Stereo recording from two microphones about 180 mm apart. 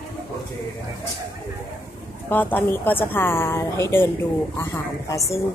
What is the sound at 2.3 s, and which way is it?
A woman's voice, 10° left (ahead or behind).